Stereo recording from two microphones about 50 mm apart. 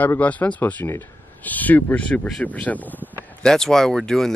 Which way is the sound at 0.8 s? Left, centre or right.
Left.